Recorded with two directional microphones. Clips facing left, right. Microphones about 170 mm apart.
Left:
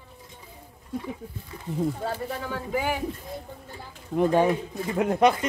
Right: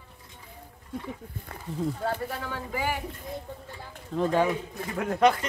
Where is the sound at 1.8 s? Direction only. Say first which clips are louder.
Left 1 dB; 15° left (ahead or behind).